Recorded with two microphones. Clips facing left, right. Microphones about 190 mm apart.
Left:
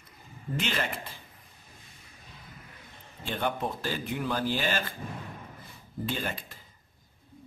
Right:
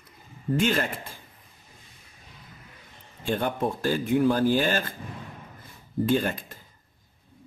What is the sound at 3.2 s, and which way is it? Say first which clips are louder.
Speech: right 5 dB; 45° right (ahead or behind).